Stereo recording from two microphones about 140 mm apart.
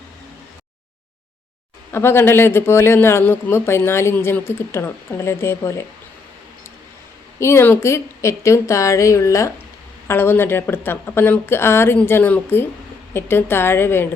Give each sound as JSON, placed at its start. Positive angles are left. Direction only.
{"t": 1.9, "sound": "speech", "side_deg": 15}
{"t": 7.3, "sound": "a woman's voice", "side_deg": 20}